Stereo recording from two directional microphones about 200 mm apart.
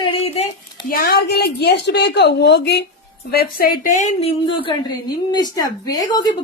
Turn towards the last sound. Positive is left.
turn(degrees=20)  # may be behind; listen again after turning